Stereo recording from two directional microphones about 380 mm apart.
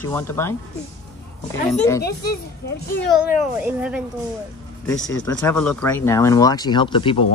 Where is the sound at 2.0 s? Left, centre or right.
Left.